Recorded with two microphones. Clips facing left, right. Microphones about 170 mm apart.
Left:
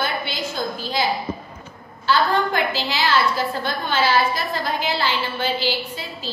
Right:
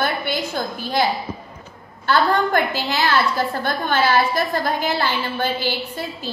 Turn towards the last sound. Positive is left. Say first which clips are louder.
# right 3 dB
turn(degrees=-50)  # may be behind; listen again after turning